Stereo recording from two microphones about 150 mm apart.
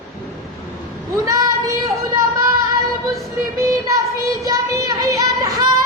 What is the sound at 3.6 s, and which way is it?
Child singing, 20° right (ahead or behind).